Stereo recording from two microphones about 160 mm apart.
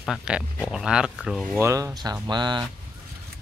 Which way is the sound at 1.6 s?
20° right (ahead or behind).